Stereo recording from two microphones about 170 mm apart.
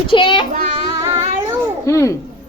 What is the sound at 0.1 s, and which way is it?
Child singing, 30° left (ahead or behind).